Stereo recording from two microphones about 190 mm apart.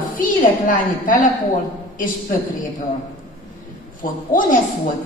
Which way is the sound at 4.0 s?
45° left (ahead or behind).